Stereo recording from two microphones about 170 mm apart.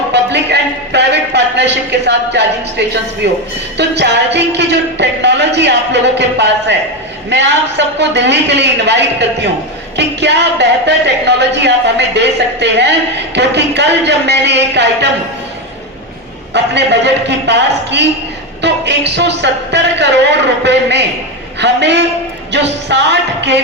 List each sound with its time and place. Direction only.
0.1 s music: 85° right
3.2 s a woman's voice: 90° right
16.5 s a woman's voice: 90° right